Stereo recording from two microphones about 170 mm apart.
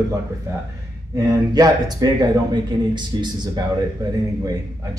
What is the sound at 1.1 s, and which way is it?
Speech, 20° right (ahead or behind).